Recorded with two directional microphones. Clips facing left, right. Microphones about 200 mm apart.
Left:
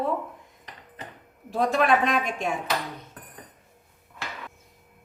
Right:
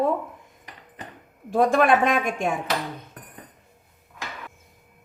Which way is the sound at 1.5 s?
50° right (ahead or behind).